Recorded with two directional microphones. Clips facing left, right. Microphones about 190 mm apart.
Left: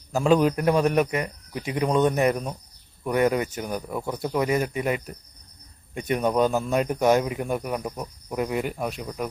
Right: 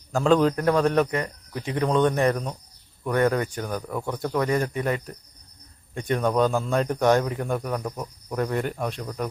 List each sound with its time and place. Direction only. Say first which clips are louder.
0.1 s speech: even; 10° left (ahead or behind)